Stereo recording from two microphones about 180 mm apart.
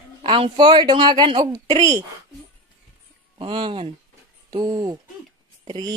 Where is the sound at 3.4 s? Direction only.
30° right (ahead or behind).